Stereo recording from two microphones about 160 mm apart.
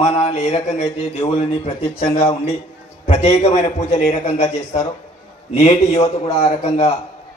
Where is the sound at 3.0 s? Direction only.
45° left (ahead or behind).